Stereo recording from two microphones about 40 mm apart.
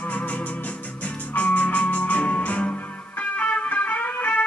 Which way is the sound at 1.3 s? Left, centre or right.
Left.